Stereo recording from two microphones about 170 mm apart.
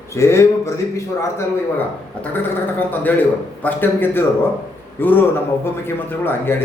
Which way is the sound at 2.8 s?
10° left (ahead or behind).